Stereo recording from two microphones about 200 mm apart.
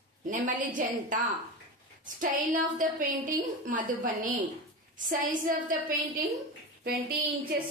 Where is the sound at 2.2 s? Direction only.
40° right (ahead or behind).